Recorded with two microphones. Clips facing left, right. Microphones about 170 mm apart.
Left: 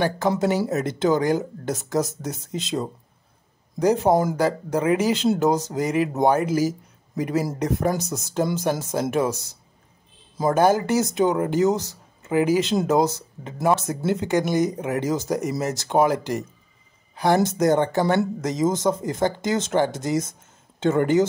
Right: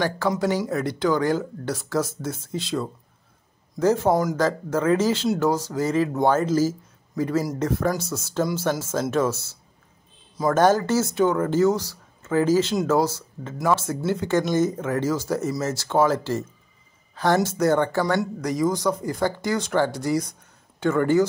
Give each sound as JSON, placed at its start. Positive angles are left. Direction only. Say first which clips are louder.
{"t": 0.3, "sound": "speech", "louder": "left 2 dB", "side_deg": 20}